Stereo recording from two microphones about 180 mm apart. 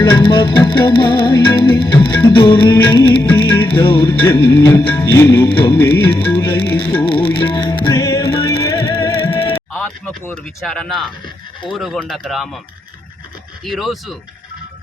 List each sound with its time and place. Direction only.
0.0 s music: 25° left (ahead or behind)
9.7 s speech: 5° left (ahead or behind)
13.7 s speech: centre (ahead or behind)